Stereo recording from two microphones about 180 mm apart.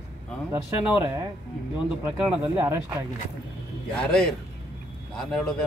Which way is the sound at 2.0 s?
10° right (ahead or behind).